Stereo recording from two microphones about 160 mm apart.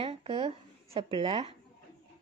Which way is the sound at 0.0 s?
35° right (ahead or behind).